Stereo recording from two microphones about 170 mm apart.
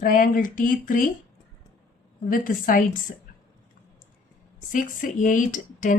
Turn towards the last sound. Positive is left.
turn(degrees=50)  # may be behind; listen again after turning